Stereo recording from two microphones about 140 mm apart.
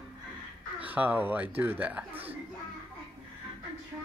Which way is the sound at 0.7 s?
10° right (ahead or behind).